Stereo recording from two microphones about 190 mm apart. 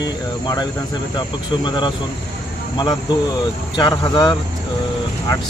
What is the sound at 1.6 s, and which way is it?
Speech, 25° left (ahead or behind).